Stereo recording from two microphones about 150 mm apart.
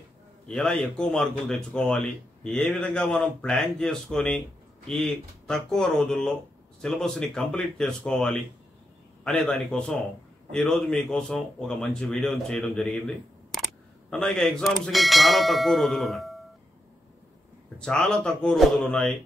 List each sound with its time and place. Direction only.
0.5 s a man's voice: 5° left (ahead or behind)
17.7 s a man's voice: 5° left (ahead or behind)